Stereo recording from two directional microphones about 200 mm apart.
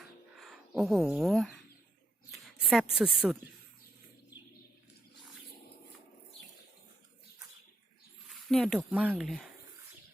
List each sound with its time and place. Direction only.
0.0 s a sound: centre (ahead or behind)
2.3 s a woman's voice: centre (ahead or behind)
8.4 s speech: centre (ahead or behind)